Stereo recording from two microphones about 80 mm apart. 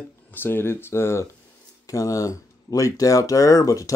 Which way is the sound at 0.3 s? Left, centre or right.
Left.